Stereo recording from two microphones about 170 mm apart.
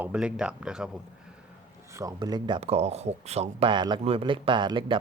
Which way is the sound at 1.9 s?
20° right (ahead or behind).